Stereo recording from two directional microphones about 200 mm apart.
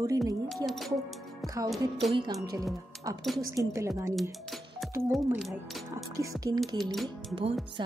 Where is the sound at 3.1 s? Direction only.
20° right (ahead or behind).